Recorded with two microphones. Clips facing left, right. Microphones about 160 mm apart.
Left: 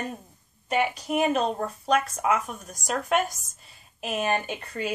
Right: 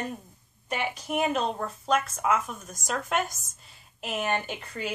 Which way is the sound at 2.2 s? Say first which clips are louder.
Left 1 dB; 55° left (ahead or behind).